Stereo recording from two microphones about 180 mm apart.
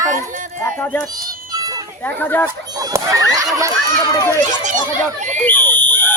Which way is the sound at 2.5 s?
20° right (ahead or behind).